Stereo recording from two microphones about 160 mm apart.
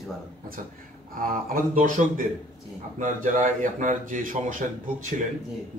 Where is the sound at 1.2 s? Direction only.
60° right (ahead or behind).